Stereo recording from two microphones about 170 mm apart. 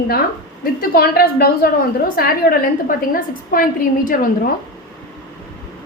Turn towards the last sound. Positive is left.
turn(degrees=55)  # may be behind; listen again after turning